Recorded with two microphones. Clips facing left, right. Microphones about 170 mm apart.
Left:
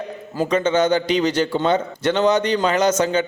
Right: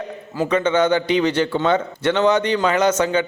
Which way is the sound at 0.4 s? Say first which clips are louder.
Even; 40° left (ahead or behind).